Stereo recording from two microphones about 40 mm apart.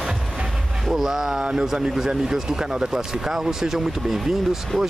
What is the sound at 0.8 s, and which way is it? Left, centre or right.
Speech, centre.